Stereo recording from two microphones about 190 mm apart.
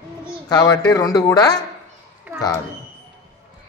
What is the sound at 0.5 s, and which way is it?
Speech, 20° left (ahead or behind).